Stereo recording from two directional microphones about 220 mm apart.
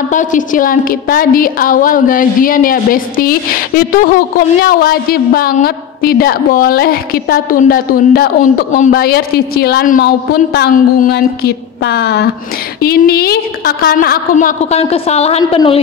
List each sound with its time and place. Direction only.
0.1 s a woman's voice: 35° left (ahead or behind)